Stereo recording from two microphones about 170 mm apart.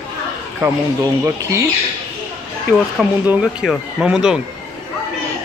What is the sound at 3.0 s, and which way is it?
Speech, 5° right (ahead or behind).